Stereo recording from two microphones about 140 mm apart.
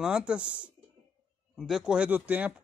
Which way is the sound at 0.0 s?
5° right (ahead or behind).